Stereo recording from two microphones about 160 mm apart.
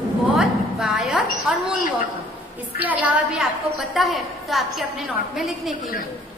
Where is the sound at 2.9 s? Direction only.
10° right (ahead or behind).